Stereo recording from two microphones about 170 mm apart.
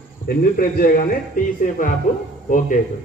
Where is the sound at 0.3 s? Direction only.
60° left (ahead or behind).